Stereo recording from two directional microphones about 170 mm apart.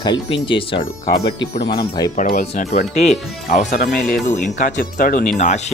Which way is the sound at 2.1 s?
50° left (ahead or behind).